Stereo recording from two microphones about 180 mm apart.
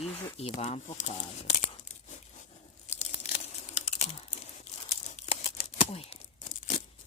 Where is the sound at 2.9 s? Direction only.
40° left (ahead or behind).